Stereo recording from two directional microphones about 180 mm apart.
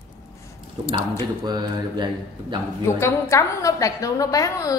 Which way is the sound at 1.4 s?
25° right (ahead or behind).